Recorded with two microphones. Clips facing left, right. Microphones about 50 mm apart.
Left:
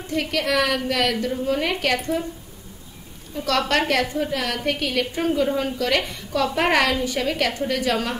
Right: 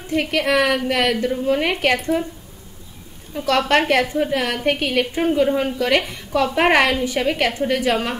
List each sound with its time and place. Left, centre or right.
0.1 s a woman's voice: right
3.3 s a woman's voice: right